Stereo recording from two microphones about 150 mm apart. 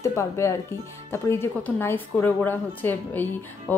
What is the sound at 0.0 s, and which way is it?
Speech, 20° left (ahead or behind).